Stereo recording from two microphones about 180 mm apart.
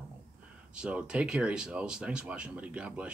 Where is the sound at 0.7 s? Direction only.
5° right (ahead or behind).